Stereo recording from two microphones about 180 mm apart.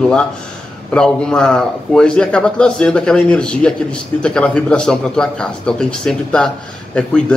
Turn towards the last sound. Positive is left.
turn(degrees=5)  # may be behind; listen again after turning